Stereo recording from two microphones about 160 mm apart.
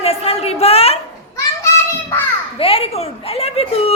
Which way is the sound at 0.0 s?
40° left (ahead or behind).